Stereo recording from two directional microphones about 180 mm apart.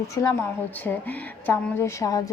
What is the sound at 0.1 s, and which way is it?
A woman's voice, 15° left (ahead or behind).